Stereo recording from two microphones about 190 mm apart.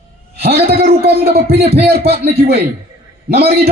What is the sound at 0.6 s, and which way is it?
Speech, 55° right (ahead or behind).